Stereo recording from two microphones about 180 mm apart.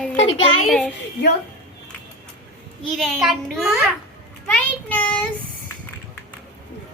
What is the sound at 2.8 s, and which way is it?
Speech, centre (ahead or behind).